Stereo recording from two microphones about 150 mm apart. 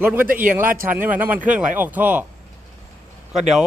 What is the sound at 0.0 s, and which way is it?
Speech, 15° right (ahead or behind).